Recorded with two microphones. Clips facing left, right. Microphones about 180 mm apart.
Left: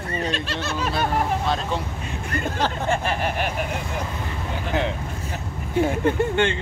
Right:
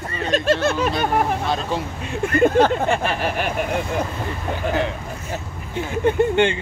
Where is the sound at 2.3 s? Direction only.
55° right (ahead or behind).